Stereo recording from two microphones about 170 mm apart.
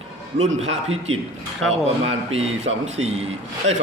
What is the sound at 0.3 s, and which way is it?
A man's voice, 40° right (ahead or behind).